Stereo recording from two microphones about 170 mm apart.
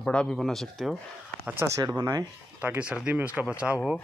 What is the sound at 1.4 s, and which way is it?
Speech, 10° right (ahead or behind).